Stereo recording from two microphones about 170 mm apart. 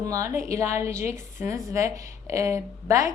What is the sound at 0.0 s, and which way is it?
A woman's voice, 20° right (ahead or behind).